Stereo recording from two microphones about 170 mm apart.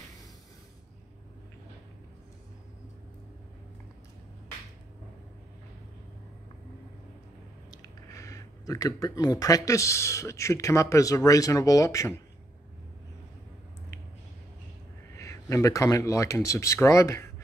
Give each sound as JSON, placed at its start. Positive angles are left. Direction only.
{"t": 7.7, "sound": "speech", "side_deg": 20}
{"t": 15.1, "sound": "speech", "side_deg": 15}